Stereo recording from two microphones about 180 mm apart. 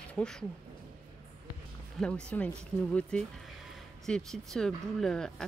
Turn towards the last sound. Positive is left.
turn(degrees=5)  # may be behind; listen again after turning